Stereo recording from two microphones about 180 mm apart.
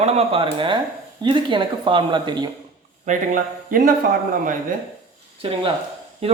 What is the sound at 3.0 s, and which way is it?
Speech, 45° right (ahead or behind).